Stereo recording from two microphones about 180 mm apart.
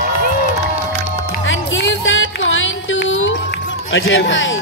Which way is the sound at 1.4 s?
90° left.